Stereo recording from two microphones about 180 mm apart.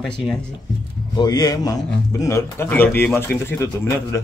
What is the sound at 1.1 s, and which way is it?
A man's voice, 20° left (ahead or behind).